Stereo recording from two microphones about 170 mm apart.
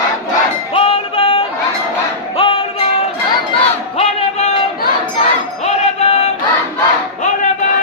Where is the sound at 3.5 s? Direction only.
35° left (ahead or behind).